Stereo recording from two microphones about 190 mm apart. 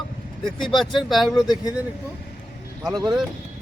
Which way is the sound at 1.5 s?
20° left (ahead or behind).